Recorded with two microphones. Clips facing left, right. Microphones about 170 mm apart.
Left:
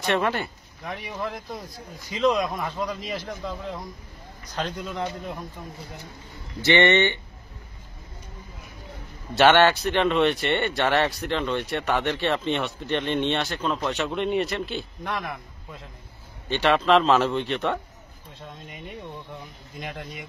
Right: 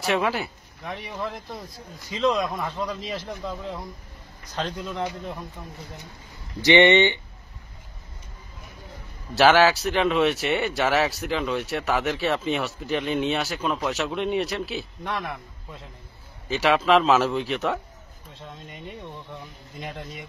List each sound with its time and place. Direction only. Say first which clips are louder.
0.0 s speech: even; 5° right (ahead or behind)
6.6 s speech: right 3 dB; 15° right (ahead or behind)
9.3 s speech: even; centre (ahead or behind)
19.8 s speech: even; 5° left (ahead or behind)